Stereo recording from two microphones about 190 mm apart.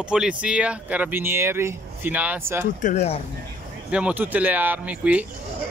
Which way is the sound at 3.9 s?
5° right (ahead or behind).